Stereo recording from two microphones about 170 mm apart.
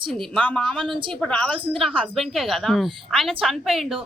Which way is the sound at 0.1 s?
5° left (ahead or behind).